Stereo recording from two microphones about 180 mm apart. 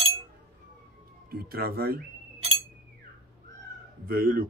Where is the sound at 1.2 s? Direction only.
60° right (ahead or behind).